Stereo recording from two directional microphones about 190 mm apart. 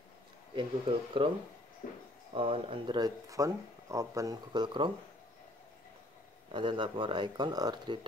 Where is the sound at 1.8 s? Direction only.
50° left (ahead or behind).